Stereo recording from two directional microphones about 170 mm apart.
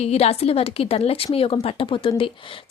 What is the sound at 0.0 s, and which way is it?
Speech, 40° left (ahead or behind).